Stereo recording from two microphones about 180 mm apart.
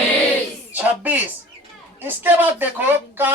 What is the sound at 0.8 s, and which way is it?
Speech, 10° right (ahead or behind).